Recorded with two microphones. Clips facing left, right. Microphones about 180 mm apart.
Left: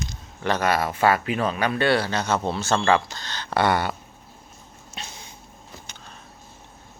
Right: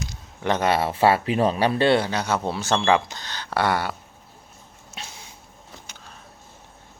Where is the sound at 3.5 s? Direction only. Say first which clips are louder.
Left 2 dB; 5° right (ahead or behind).